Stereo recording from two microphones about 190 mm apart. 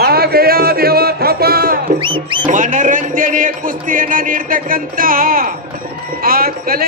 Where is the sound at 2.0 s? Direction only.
25° right (ahead or behind).